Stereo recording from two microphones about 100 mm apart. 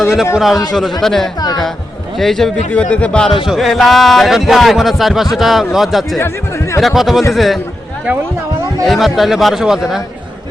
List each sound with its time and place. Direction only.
0.0 s speech: 5° right (ahead or behind)
1.4 s speech: 40° left (ahead or behind)
2.1 s speech: 5° left (ahead or behind)
6.1 s speech: 25° left (ahead or behind)
6.7 s speech: centre (ahead or behind)
8.8 s speech: centre (ahead or behind)